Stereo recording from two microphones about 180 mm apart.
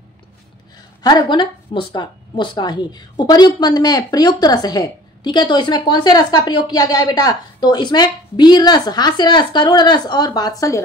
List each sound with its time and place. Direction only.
0.7 s a woman's voice: 25° left (ahead or behind)